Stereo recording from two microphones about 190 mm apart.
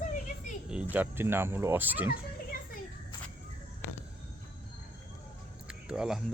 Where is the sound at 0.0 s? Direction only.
40° left (ahead or behind).